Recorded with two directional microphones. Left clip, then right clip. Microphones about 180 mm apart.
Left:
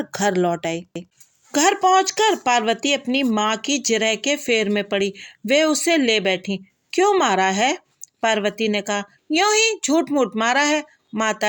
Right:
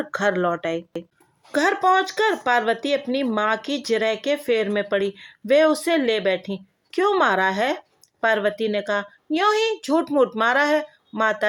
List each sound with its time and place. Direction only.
0.0 s speech: 40° left (ahead or behind)